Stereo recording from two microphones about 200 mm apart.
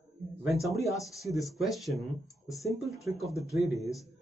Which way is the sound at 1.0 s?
Centre (ahead or behind).